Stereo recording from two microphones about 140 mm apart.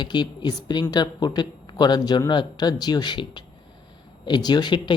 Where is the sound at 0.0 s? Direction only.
30° left (ahead or behind).